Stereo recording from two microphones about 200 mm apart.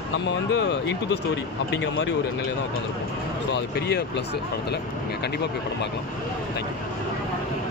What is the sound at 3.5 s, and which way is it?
Speech, 55° left (ahead or behind).